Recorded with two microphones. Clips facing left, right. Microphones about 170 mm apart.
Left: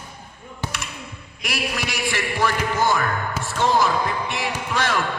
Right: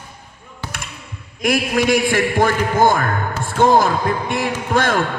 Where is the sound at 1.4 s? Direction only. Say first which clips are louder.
Right 11 dB; 50° right (ahead or behind).